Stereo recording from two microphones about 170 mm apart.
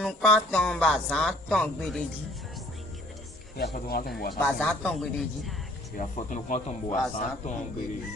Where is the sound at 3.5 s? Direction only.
65° left (ahead or behind).